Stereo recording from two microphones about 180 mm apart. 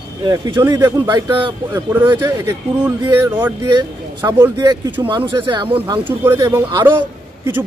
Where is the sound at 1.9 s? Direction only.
10° right (ahead or behind).